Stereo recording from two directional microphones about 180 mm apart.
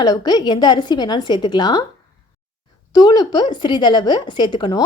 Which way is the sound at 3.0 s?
25° left (ahead or behind).